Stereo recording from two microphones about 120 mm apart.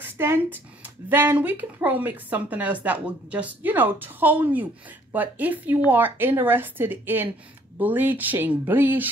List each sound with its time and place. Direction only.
0.0 s speech: 20° right (ahead or behind)